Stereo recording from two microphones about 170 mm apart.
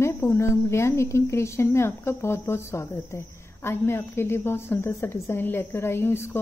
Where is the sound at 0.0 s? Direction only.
15° left (ahead or behind).